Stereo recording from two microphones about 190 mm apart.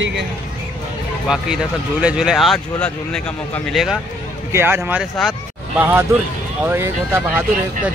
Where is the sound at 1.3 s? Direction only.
5° right (ahead or behind).